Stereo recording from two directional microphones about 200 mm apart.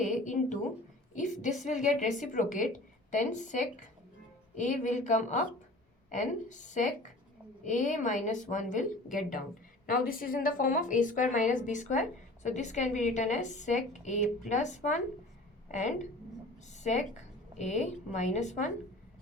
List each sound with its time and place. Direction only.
0.0 s a woman's voice: 40° left (ahead or behind)